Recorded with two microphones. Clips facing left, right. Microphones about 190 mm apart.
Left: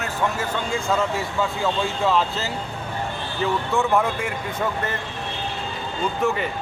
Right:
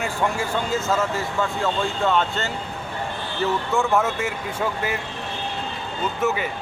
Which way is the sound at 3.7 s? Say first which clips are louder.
Left 1 dB; centre (ahead or behind).